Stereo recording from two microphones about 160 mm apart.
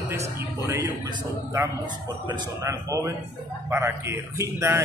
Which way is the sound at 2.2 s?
25° right (ahead or behind).